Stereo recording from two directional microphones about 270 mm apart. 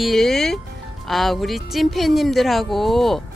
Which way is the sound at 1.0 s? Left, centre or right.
Centre.